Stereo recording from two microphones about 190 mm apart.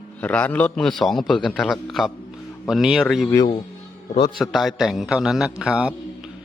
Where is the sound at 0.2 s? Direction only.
5° left (ahead or behind).